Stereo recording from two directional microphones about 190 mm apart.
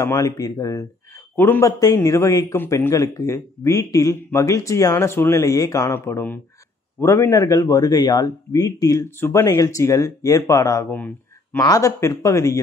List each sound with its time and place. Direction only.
0.0 s a man's voice: 20° left (ahead or behind)